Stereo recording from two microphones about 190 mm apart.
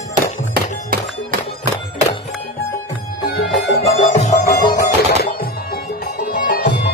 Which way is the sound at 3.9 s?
35° left (ahead or behind).